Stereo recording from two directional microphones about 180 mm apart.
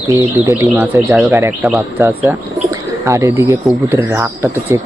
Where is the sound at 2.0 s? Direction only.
15° right (ahead or behind).